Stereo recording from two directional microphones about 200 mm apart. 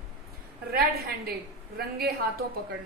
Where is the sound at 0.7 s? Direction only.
50° right (ahead or behind).